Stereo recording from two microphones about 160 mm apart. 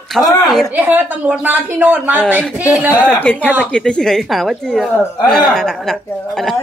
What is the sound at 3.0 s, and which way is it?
Speech, 10° left (ahead or behind).